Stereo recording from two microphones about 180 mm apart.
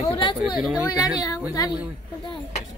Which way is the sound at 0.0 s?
30° left (ahead or behind).